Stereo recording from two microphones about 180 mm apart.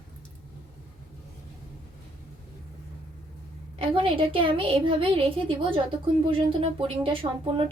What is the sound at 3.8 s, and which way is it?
A woman's voice, 30° right (ahead or behind).